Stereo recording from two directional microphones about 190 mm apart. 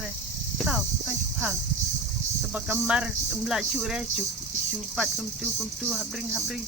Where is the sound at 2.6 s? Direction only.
5° right (ahead or behind).